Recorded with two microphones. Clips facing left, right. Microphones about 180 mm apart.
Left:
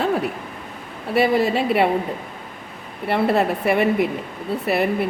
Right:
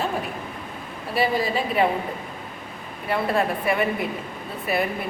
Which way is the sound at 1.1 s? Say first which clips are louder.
Left 5 dB; 75° left (ahead or behind).